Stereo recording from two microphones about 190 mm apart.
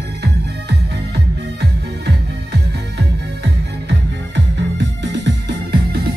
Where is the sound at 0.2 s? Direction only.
60° right (ahead or behind).